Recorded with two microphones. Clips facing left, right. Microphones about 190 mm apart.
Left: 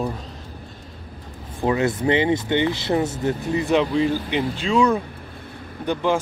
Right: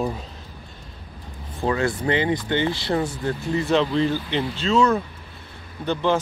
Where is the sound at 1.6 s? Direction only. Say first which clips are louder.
Left 2 dB; 20° left (ahead or behind).